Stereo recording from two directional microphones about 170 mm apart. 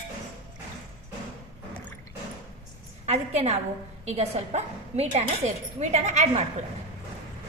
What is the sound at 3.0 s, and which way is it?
A woman's voice, 40° right (ahead or behind).